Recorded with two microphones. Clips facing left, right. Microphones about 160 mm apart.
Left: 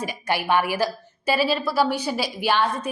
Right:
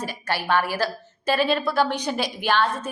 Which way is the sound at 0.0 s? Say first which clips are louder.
Left 2 dB; 15° left (ahead or behind).